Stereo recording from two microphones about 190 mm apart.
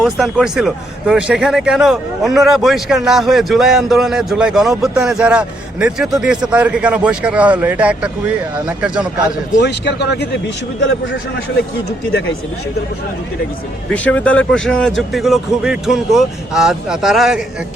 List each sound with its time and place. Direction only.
0.0 s a man's voice: centre (ahead or behind)
9.6 s a man's voice: 65° left (ahead or behind)
13.9 s a man's voice: 5° left (ahead or behind)